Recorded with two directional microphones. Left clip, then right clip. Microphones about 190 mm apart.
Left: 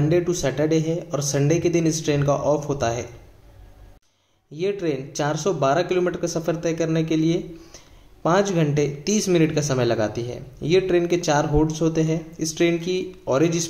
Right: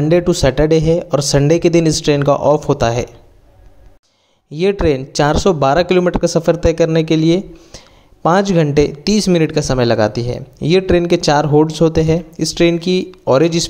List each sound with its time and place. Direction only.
0.0 s speech: 45° right (ahead or behind)
4.5 s speech: 45° right (ahead or behind)